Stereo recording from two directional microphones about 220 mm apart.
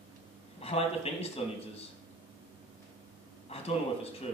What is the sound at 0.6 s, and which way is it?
A man's voice, 25° left (ahead or behind).